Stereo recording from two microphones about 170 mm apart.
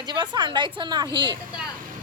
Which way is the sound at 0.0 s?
25° right (ahead or behind).